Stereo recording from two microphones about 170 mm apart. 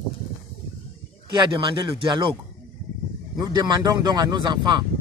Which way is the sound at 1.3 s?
30° right (ahead or behind).